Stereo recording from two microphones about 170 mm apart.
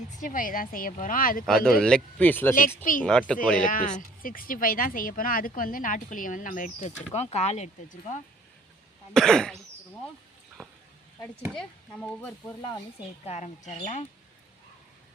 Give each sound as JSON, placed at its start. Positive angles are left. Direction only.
{"t": 0.1, "sound": "a woman's voice", "side_deg": 50}
{"t": 1.5, "sound": "speech", "side_deg": 5}
{"t": 2.6, "sound": "speech", "side_deg": 55}
{"t": 3.0, "sound": "throat clearing", "side_deg": 5}
{"t": 3.7, "sound": "speech", "side_deg": 50}
{"t": 9.1, "sound": "throat clearing", "side_deg": 5}
{"t": 11.5, "sound": "speech", "side_deg": 5}
{"t": 13.2, "sound": "speech", "side_deg": 40}